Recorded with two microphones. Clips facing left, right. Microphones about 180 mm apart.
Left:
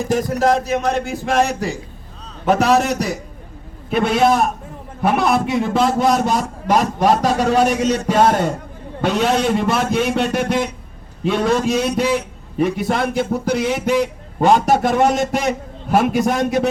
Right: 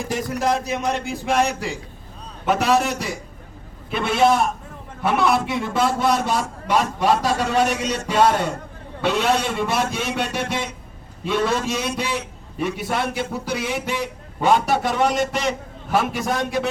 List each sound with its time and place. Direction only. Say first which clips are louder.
0.1 s a man's voice: left 6 dB; 50° left (ahead or behind)
9.7 s a man's voice: left 5 dB; 55° left (ahead or behind)